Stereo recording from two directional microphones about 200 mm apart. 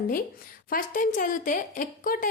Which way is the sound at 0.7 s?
45° left (ahead or behind).